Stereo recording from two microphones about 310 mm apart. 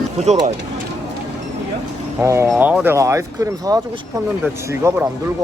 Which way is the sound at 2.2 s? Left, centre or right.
Centre.